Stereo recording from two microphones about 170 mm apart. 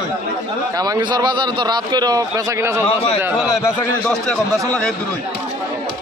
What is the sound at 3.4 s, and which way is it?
Speech, 15° left (ahead or behind).